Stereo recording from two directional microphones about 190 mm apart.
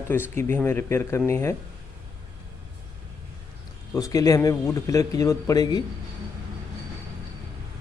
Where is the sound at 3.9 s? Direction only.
20° left (ahead or behind).